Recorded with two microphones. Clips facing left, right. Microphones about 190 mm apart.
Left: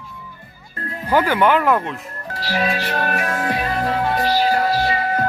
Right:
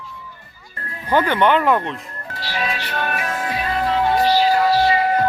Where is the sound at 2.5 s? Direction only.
40° left (ahead or behind).